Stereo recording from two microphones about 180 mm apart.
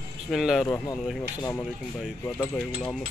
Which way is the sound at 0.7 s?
20° left (ahead or behind).